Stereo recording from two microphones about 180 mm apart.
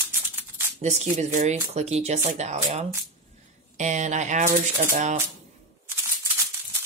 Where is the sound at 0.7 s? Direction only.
40° right (ahead or behind).